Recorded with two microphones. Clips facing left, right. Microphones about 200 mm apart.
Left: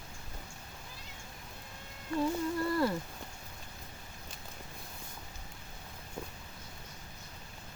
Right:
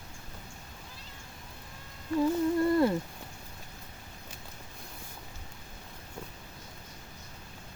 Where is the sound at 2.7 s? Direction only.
25° right (ahead or behind).